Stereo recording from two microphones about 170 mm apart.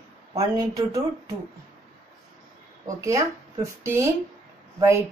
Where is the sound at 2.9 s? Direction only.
20° right (ahead or behind).